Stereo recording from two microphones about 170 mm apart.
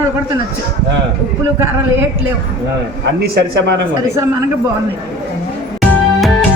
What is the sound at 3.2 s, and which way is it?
Speech, 70° right (ahead or behind).